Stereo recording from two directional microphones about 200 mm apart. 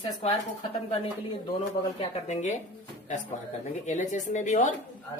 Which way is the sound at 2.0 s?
35° left (ahead or behind).